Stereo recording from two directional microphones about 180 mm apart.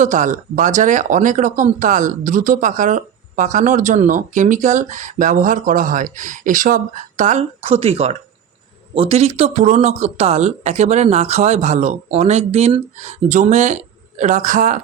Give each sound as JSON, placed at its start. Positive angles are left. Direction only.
{"t": 0.0, "sound": "speech", "side_deg": -45}